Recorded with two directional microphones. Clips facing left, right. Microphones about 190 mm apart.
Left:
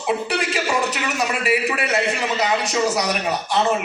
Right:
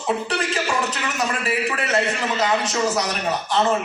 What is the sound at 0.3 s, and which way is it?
A man's voice, 10° left (ahead or behind).